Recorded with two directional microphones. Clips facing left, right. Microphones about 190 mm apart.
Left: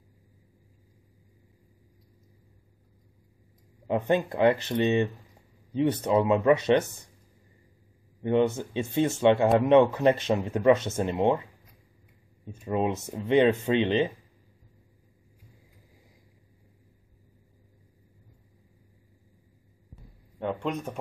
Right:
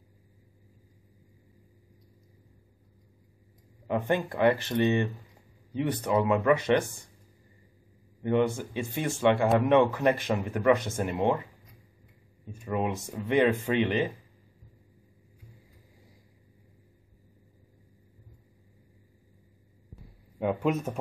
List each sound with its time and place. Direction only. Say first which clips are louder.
3.8 s speech: left 3 dB; 25° left (ahead or behind)
8.2 s speech: left 2 dB; 20° left (ahead or behind)
12.6 s speech: left 3 dB; 25° left (ahead or behind)
20.3 s speech: right 3 dB; 5° right (ahead or behind)